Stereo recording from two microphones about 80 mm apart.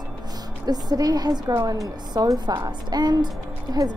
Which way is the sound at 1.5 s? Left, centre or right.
Right.